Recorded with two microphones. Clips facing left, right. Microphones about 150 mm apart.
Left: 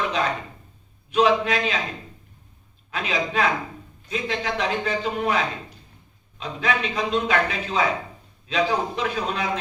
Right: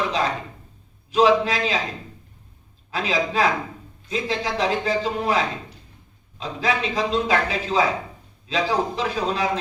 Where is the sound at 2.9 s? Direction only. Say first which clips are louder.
Right 2 dB; 35° right (ahead or behind).